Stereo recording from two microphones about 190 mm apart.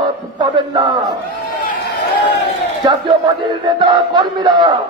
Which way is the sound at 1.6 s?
60° left (ahead or behind).